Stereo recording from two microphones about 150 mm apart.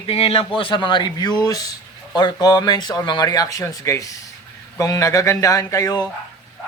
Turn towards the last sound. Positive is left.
turn(degrees=25)  # may be behind; listen again after turning